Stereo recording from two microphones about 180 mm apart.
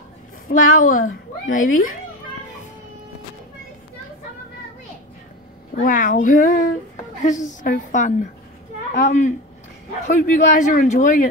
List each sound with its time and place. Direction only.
0.5 s a woman's voice: 50° left (ahead or behind)
5.8 s a woman's voice: 50° left (ahead or behind)